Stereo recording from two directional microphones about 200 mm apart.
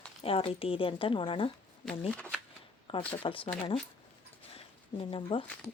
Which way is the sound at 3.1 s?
25° left (ahead or behind).